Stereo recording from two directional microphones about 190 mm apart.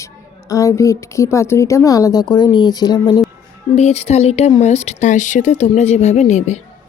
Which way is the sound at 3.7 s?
35° left (ahead or behind).